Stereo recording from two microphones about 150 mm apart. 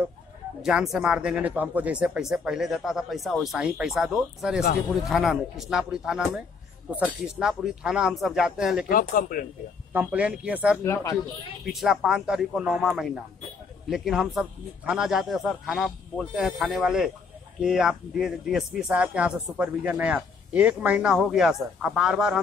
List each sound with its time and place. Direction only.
0.6 s speech: 5° right (ahead or behind)
8.8 s speech: 70° left (ahead or behind)
9.9 s speech: 10° right (ahead or behind)
10.8 s speech: 20° left (ahead or behind)
11.6 s speech: centre (ahead or behind)